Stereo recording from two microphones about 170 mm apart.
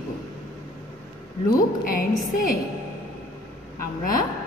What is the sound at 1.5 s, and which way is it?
A woman's voice, 60° left (ahead or behind).